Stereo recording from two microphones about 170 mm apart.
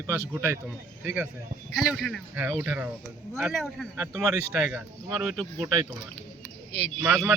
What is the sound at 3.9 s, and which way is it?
Speech, 20° right (ahead or behind).